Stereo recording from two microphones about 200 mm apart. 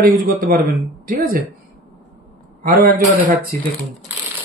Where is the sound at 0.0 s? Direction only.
45° right (ahead or behind).